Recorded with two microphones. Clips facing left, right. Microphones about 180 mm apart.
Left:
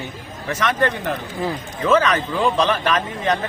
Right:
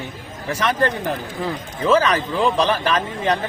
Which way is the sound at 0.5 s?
35° right (ahead or behind).